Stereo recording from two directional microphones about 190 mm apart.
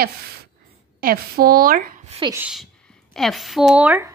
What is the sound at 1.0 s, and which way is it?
A woman's voice, 50° right (ahead or behind).